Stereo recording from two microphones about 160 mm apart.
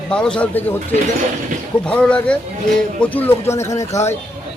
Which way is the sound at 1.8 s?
5° left (ahead or behind).